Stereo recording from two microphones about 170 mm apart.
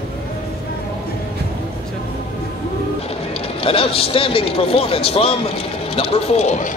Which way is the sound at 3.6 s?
35° left (ahead or behind).